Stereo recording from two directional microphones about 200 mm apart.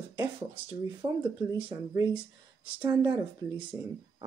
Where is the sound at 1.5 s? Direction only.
10° right (ahead or behind).